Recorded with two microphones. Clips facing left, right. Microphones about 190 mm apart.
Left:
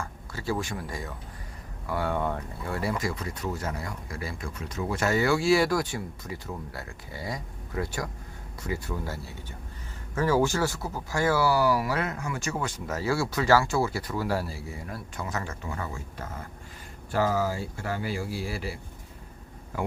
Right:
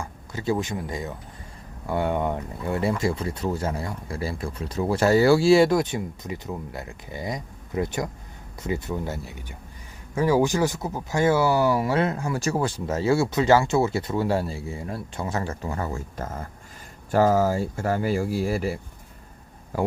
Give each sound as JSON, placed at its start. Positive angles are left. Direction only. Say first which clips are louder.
{"t": 0.0, "sound": "speech", "louder": "right 5 dB", "side_deg": -20}